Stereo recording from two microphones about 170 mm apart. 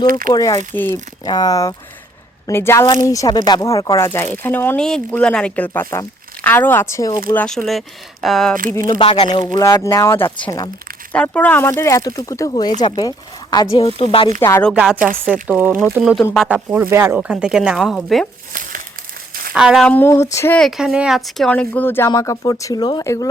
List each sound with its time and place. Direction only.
0.1 s speech: 55° right (ahead or behind)
0.3 s speech: 20° left (ahead or behind)
1.2 s speech: 25° left (ahead or behind)
7.3 s speech: 5° left (ahead or behind)
8.9 s speech: 35° left (ahead or behind)
14.4 s speech: 15° left (ahead or behind)
14.7 s speech: 5° right (ahead or behind)
19.5 s speech: 5° right (ahead or behind)
19.9 s speech: 15° left (ahead or behind)
20.6 s speech: centre (ahead or behind); by 23.2 s 20° left (ahead or behind)